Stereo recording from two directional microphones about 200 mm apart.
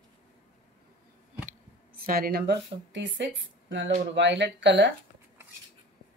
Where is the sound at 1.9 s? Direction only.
45° right (ahead or behind); by 4.9 s 65° right (ahead or behind).